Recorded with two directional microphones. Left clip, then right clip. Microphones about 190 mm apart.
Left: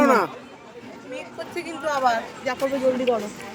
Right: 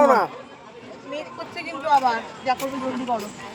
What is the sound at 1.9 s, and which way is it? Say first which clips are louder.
Speech: right 3 dB; 25° left (ahead or behind).